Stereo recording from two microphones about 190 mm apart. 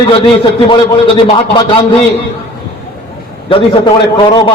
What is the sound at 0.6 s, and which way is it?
A man's voice, 25° left (ahead or behind).